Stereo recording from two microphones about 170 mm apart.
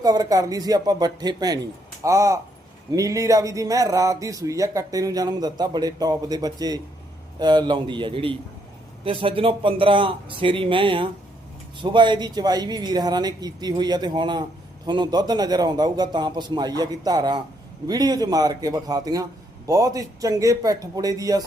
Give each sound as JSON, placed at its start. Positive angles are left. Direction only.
{"t": 0.0, "sound": "speech", "side_deg": -20}